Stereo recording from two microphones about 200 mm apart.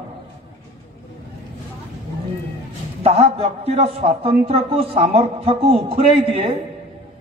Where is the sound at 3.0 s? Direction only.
30° right (ahead or behind).